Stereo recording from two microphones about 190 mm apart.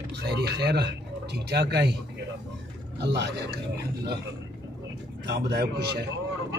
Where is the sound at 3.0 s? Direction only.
60° right (ahead or behind).